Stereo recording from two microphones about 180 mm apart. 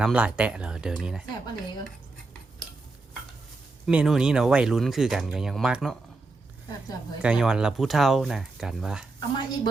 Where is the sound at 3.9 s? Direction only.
5° right (ahead or behind).